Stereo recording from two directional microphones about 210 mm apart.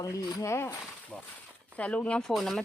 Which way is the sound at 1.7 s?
5° left (ahead or behind).